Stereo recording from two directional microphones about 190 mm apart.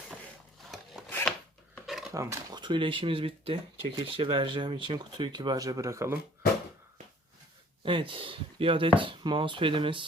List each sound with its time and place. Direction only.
0.7 s filing: centre (ahead or behind)
2.1 s speech: 20° right (ahead or behind)
7.9 s speech: 25° right (ahead or behind)